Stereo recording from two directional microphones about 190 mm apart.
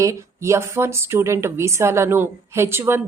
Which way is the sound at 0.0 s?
15° right (ahead or behind).